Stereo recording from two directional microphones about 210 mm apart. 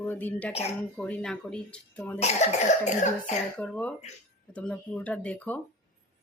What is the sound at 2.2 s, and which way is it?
Cough, 30° left (ahead or behind).